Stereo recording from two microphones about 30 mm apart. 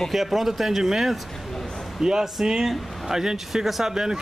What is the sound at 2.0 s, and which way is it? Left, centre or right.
A man's voice, centre.